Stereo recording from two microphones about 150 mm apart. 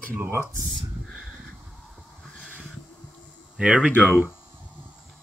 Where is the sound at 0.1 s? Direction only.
15° right (ahead or behind).